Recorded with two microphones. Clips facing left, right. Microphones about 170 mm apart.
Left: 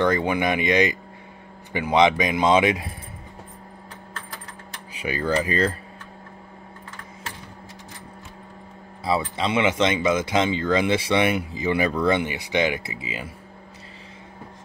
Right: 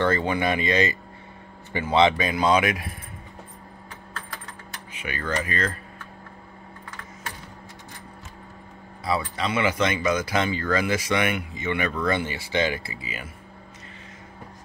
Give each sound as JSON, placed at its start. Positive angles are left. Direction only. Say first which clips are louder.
{"t": 0.0, "sound": "a man's voice", "louder": "left 2 dB", "side_deg": 15}
{"t": 4.9, "sound": "speech", "louder": "left 5 dB", "side_deg": 35}
{"t": 9.0, "sound": "speech", "louder": "left 3 dB", "side_deg": 25}
{"t": 12.0, "sound": "speech", "louder": "left 4 dB", "side_deg": 20}